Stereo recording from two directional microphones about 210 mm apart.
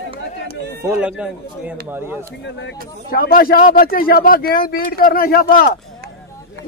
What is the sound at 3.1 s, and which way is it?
A man's voice, 45° left (ahead or behind).